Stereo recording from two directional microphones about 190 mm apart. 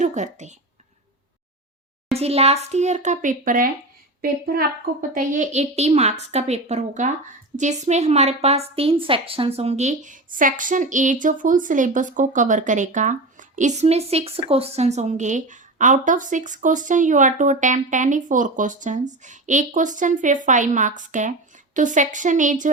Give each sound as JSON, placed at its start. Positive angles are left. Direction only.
{"t": 0.0, "sound": "speech", "side_deg": -40}
{"t": 2.1, "sound": "speech", "side_deg": -35}